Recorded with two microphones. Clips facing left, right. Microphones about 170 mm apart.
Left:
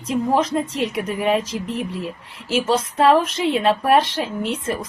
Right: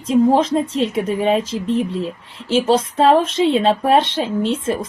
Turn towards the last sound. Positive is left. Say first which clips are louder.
# right 5 dB
turn(degrees=-25)  # may be behind; listen again after turning